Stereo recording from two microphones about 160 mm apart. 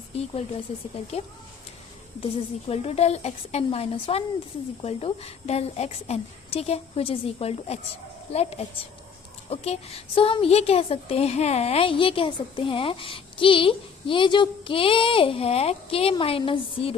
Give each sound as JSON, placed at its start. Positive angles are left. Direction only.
{"t": 0.2, "sound": "a woman's voice", "side_deg": 40}
{"t": 2.2, "sound": "a woman's voice", "side_deg": 35}